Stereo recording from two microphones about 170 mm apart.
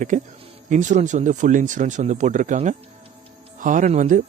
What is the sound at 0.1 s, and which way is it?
Speech, 45° right (ahead or behind).